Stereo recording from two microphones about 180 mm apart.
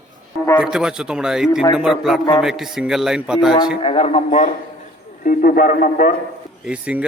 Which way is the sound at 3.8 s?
30° left (ahead or behind).